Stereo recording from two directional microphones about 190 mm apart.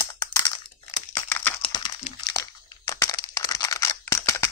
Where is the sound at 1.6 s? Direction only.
25° left (ahead or behind).